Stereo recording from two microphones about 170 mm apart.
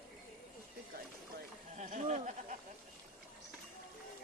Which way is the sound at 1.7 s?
45° right (ahead or behind).